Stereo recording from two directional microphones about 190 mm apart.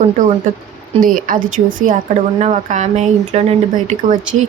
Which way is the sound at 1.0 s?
45° right (ahead or behind).